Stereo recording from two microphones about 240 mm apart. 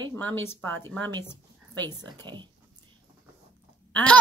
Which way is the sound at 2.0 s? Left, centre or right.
Centre.